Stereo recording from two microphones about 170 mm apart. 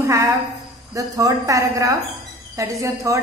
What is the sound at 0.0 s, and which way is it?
A woman's voice, 15° right (ahead or behind).